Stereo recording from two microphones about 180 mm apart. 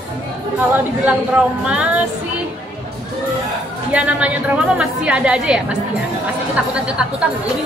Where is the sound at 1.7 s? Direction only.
5° right (ahead or behind).